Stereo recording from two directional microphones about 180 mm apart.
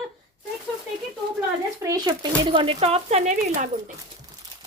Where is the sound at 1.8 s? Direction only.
20° right (ahead or behind); by 3.3 s 35° right (ahead or behind).